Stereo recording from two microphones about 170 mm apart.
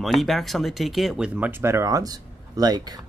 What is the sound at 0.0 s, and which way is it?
Speech, centre (ahead or behind).